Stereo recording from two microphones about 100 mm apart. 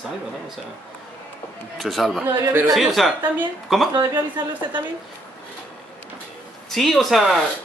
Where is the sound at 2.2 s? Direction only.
25° right (ahead or behind).